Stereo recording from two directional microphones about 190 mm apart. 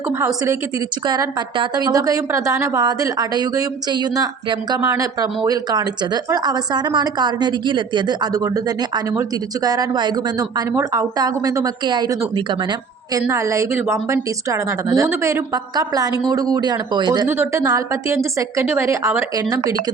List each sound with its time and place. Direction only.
1.0 s a woman's voice: 20° right (ahead or behind)
9.6 s a woman's voice: 20° right (ahead or behind)